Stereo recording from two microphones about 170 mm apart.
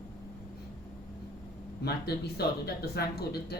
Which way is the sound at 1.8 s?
70° left (ahead or behind).